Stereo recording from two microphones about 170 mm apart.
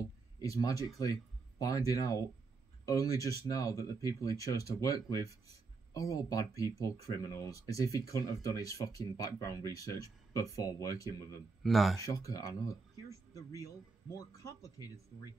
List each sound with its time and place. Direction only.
0.4 s speech: 20° left (ahead or behind)
11.6 s speech: centre (ahead or behind)
12.0 s speech: 20° left (ahead or behind)